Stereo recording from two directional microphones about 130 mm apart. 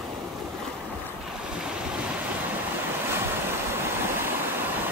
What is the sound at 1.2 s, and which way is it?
Waves, 5° right (ahead or behind).